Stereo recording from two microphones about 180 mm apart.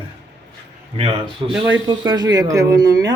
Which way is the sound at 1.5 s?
10° right (ahead or behind).